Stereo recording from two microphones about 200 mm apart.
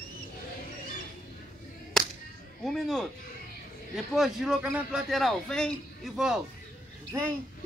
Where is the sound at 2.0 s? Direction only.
Centre (ahead or behind).